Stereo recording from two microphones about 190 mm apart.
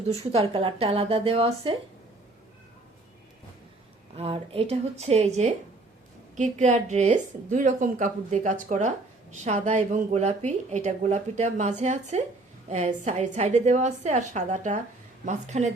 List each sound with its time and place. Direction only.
0.1 s a woman's voice: 30° right (ahead or behind)
4.2 s a woman's voice: 30° right (ahead or behind)